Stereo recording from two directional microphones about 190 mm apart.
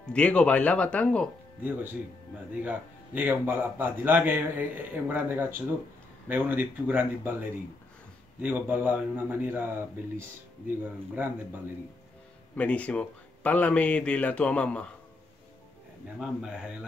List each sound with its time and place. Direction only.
0.0 s speech: 5° left (ahead or behind)
1.6 s a man's voice: 10° right (ahead or behind)
8.4 s a man's voice: 10° right (ahead or behind)
12.5 s speech: 5° left (ahead or behind)
16.2 s speech: 5° right (ahead or behind)